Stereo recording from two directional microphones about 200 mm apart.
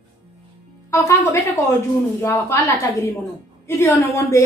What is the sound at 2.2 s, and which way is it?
A woman's voice, 10° left (ahead or behind).